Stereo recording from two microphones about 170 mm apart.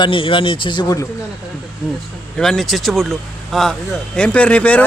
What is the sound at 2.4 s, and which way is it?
Speech, centre (ahead or behind).